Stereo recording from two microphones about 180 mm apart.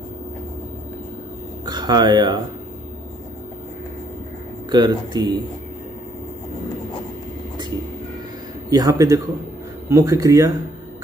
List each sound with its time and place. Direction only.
1.7 s speech: 25° right (ahead or behind)
4.6 s speech: 25° right (ahead or behind)
8.6 s speech: 20° right (ahead or behind)